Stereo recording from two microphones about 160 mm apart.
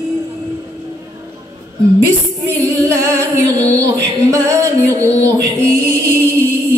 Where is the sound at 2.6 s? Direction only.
20° right (ahead or behind).